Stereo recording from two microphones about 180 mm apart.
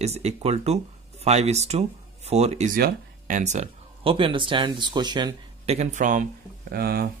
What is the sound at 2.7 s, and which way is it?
Speech, 50° right (ahead or behind).